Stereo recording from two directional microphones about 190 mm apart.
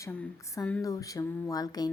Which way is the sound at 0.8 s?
15° left (ahead or behind).